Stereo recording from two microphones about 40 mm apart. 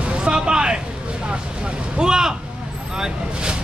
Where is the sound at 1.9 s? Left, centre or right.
Centre.